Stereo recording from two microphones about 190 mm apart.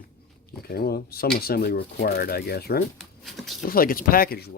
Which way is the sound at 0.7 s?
55° left (ahead or behind).